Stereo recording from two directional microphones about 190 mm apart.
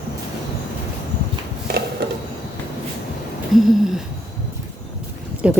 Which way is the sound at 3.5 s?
Centre (ahead or behind).